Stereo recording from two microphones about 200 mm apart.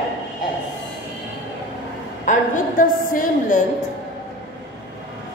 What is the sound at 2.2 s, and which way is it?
A woman's voice, 40° left (ahead or behind).